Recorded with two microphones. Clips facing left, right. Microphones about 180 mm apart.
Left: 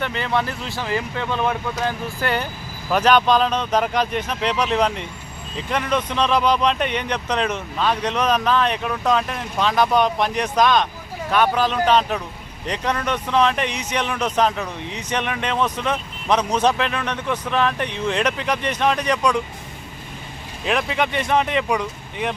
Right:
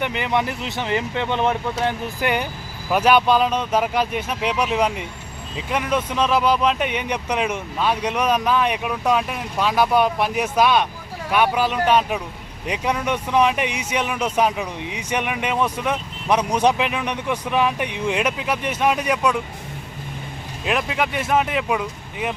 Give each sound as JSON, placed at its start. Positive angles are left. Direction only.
{"t": 0.0, "sound": "speech", "side_deg": -15}
{"t": 20.7, "sound": "speech", "side_deg": -5}